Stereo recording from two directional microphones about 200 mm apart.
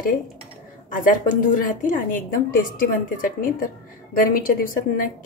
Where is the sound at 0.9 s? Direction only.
40° left (ahead or behind).